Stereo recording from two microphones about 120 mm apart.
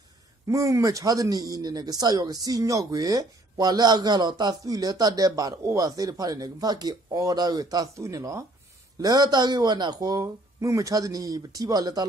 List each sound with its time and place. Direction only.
0.5 s speech: 25° right (ahead or behind)